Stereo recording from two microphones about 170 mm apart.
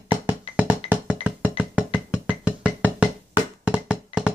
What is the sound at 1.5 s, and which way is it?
Music, 10° right (ahead or behind).